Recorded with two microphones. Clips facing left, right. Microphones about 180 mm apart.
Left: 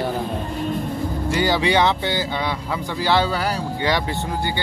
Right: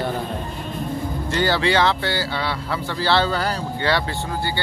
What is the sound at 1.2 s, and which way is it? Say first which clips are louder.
Speech: left 1 dB; 10° left (ahead or behind).